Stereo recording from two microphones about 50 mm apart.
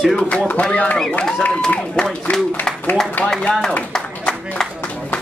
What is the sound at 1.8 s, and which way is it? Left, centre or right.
Speech, centre.